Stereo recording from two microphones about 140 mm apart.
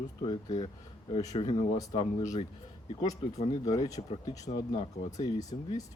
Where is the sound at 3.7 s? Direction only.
25° left (ahead or behind).